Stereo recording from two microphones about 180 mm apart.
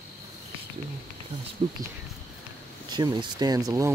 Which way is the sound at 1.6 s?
25° right (ahead or behind).